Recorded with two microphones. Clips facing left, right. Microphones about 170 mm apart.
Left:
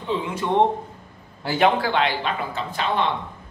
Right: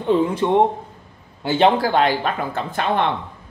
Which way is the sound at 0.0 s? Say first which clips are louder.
Right 9 dB; 50° right (ahead or behind).